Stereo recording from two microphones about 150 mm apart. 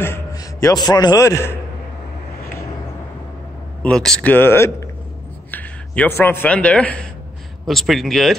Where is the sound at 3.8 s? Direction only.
5° left (ahead or behind).